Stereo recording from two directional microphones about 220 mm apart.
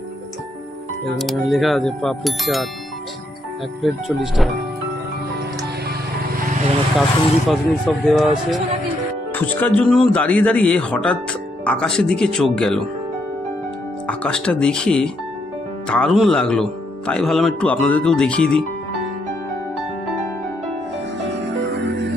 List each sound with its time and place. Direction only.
1.1 s speech: centre (ahead or behind)
3.8 s speech: centre (ahead or behind)
7.0 s speech: centre (ahead or behind)
14.0 s speech: 5° left (ahead or behind)